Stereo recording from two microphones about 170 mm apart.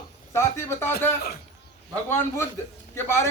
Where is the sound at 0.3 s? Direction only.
15° left (ahead or behind).